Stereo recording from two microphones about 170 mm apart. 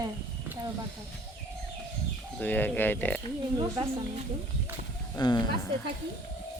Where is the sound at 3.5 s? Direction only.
30° right (ahead or behind).